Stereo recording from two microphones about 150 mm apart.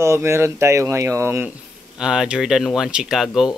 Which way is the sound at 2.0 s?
5° right (ahead or behind).